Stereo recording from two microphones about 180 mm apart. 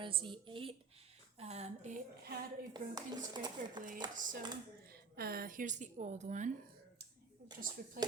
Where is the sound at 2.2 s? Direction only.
55° right (ahead or behind).